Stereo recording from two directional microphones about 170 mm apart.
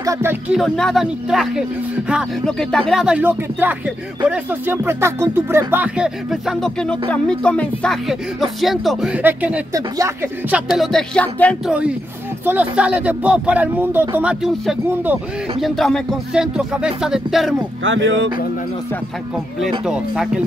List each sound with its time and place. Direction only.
0.0 s speech: 15° right (ahead or behind)
0.6 s speech: centre (ahead or behind); by 10.6 s 15° right (ahead or behind)
10.7 s speech: centre (ahead or behind)
12.4 s speech: 10° right (ahead or behind)
17.8 s speech: 90° right
19.8 s speech: 5° right (ahead or behind)